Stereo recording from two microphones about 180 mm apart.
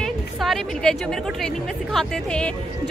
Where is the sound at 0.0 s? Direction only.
Centre (ahead or behind).